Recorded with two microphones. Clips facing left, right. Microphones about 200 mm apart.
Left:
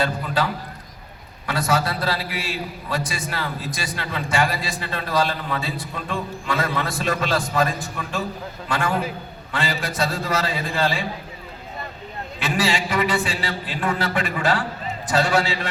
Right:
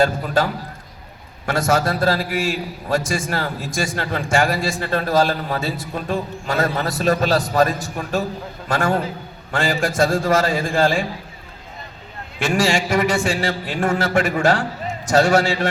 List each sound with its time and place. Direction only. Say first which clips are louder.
0.0 s a man's voice: right 5 dB; 45° right (ahead or behind)
12.4 s a man's voice: right 4 dB; 45° right (ahead or behind)